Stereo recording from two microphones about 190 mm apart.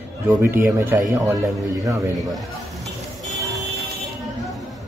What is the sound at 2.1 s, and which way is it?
Speech, centre (ahead or behind).